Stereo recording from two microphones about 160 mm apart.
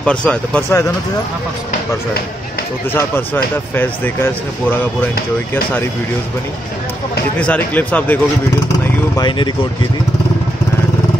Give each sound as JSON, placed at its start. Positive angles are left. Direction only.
{"t": 0.0, "sound": "a man's voice", "side_deg": 5}
{"t": 2.9, "sound": "a man's voice", "side_deg": 15}
{"t": 7.3, "sound": "a man's voice", "side_deg": 10}
{"t": 9.1, "sound": "speech", "side_deg": 25}